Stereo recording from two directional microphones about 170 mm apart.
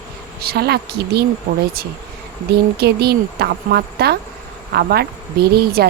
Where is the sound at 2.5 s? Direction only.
70° right (ahead or behind).